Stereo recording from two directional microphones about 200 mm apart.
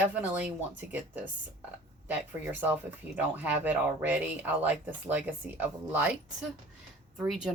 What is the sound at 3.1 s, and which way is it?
Speech, 10° right (ahead or behind).